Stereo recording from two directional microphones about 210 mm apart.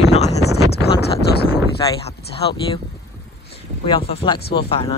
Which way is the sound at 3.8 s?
25° left (ahead or behind).